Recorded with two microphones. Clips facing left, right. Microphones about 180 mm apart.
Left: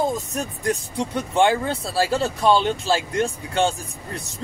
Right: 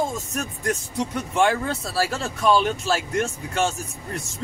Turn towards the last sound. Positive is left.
turn(degrees=30)  # may be behind; listen again after turning